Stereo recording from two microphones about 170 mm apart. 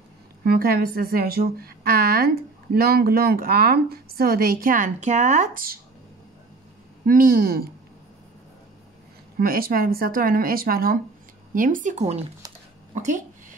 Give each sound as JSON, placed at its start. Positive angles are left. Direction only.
{"t": 0.4, "sound": "a woman's voice", "side_deg": -65}
{"t": 7.1, "sound": "a woman's voice", "side_deg": -60}
{"t": 9.4, "sound": "a woman's voice", "side_deg": -60}
{"t": 12.9, "sound": "a sound", "side_deg": -45}